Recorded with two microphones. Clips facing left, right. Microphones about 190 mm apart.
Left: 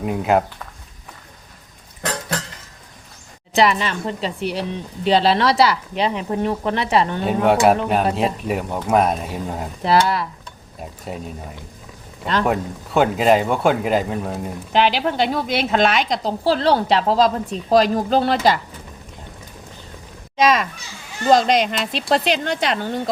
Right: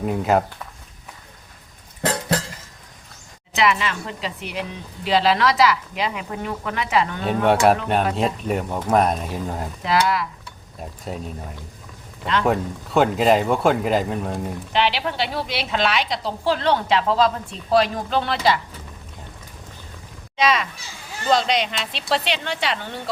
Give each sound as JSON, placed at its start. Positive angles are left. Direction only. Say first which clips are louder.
{"t": 0.0, "sound": "speech", "louder": "left 1 dB", "side_deg": 5}
{"t": 2.0, "sound": "a sound", "louder": "right 3 dB", "side_deg": -25}
{"t": 3.5, "sound": "a woman's voice", "louder": "left 3 dB", "side_deg": 35}
{"t": 7.4, "sound": "speech", "louder": "left 1 dB", "side_deg": 0}
{"t": 9.8, "sound": "a woman's voice", "louder": "left 3 dB", "side_deg": 30}
{"t": 10.8, "sound": "speech", "louder": "left 1 dB", "side_deg": 0}
{"t": 12.5, "sound": "speech", "louder": "even", "side_deg": 0}
{"t": 14.7, "sound": "a woman's voice", "louder": "left 5 dB", "side_deg": 45}
{"t": 20.3, "sound": "a child's voice", "louder": "left 4 dB", "side_deg": 45}